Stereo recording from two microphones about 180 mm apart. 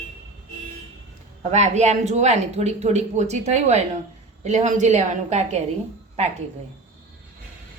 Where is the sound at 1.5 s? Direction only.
40° right (ahead or behind).